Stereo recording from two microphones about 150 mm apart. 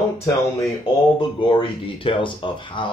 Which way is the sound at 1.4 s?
35° left (ahead or behind).